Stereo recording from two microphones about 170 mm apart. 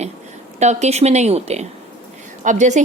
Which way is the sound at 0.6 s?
40° right (ahead or behind).